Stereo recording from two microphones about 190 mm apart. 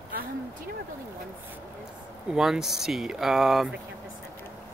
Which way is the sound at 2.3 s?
Centre (ahead or behind).